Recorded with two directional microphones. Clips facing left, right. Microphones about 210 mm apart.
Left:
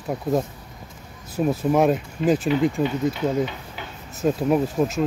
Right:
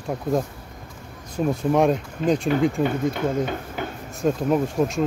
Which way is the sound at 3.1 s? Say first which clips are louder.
Even; 50° right (ahead or behind).